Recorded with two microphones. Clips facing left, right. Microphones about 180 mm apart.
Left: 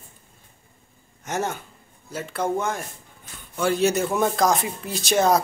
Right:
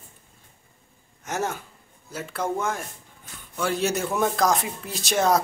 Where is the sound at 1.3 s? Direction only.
5° right (ahead or behind).